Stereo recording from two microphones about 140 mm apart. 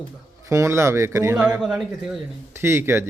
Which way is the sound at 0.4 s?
20° right (ahead or behind).